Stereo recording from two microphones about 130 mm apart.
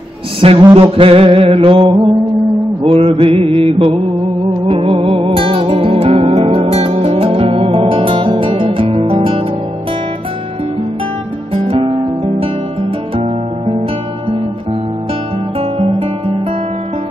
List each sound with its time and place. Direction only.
0.4 s music: 45° right (ahead or behind)
11.5 s music: 45° right (ahead or behind)
15.6 s guitar: 50° right (ahead or behind)